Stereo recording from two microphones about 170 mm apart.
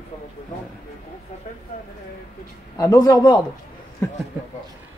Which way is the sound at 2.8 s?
20° left (ahead or behind).